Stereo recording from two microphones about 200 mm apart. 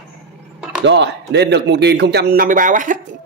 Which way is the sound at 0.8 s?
60° right (ahead or behind).